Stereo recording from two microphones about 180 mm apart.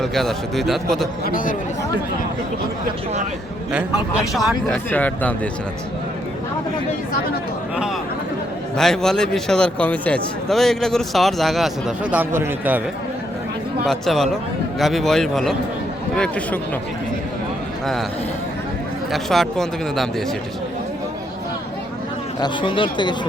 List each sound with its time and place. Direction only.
0.0 s a man's voice: centre (ahead or behind)
1.2 s speech: 50° left (ahead or behind)
4.2 s a man's voice: centre (ahead or behind)
8.7 s a man's voice: 5° left (ahead or behind)
13.8 s a man's voice: centre (ahead or behind)
19.1 s a man's voice: centre (ahead or behind)
22.4 s speech: 25° left (ahead or behind)